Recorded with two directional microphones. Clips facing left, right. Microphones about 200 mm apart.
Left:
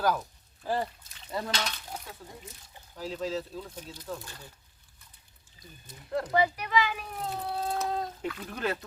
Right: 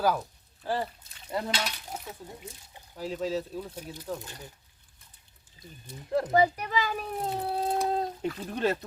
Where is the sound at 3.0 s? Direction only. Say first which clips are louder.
Right 2 dB; 10° right (ahead or behind).